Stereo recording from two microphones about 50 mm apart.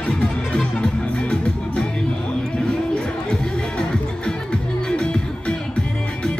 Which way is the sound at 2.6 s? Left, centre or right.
Centre.